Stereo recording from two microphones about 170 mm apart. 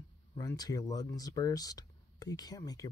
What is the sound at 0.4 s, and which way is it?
Speech, 20° left (ahead or behind).